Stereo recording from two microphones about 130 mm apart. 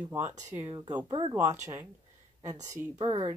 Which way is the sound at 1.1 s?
40° right (ahead or behind).